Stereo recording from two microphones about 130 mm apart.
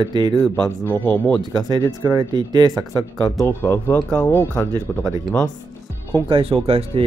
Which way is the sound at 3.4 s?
20° left (ahead or behind).